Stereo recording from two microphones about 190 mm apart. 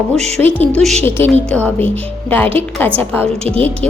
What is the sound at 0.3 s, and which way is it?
Speech, 10° left (ahead or behind).